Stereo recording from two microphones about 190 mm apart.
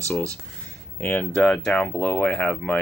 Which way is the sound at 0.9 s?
10° left (ahead or behind).